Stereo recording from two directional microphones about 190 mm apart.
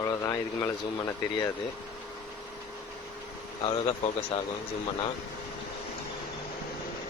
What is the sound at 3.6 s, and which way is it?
Speech, 30° left (ahead or behind).